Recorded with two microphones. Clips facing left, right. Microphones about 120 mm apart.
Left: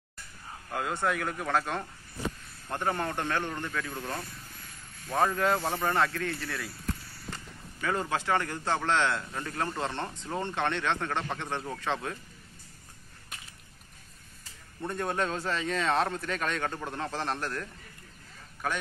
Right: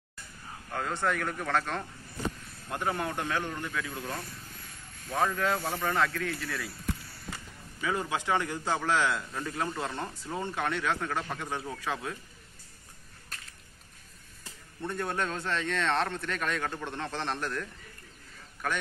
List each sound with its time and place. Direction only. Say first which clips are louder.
0.7 s speech: left 1 dB; 5° left (ahead or behind)
5.1 s speech: left 2 dB; 5° left (ahead or behind)
5.6 s speech: left 2 dB; 20° left (ahead or behind)
5.9 s speech: even; 5° left (ahead or behind)
7.2 s a sound: left 1 dB; 10° right (ahead or behind)
8.2 s speech: even; 15° right (ahead or behind)
14.8 s speech: left 2 dB; centre (ahead or behind)